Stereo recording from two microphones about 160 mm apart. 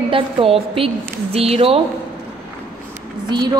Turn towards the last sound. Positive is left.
turn(degrees=-25)  # may be behind; listen again after turning